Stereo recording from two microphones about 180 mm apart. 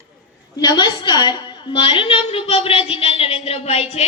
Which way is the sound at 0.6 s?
20° left (ahead or behind).